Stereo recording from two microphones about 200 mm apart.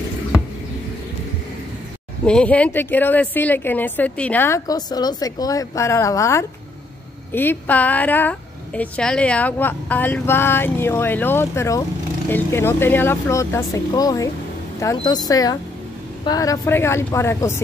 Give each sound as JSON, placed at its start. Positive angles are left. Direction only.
{"t": 2.2, "sound": "a woman's voice", "side_deg": 5}